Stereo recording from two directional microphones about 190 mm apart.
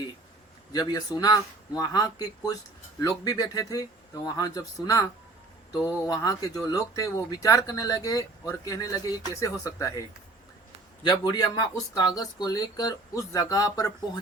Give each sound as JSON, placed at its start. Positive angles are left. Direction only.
{"t": 0.7, "sound": "speech", "side_deg": 20}
{"t": 6.1, "sound": "speech", "side_deg": 20}
{"t": 11.0, "sound": "speech", "side_deg": 20}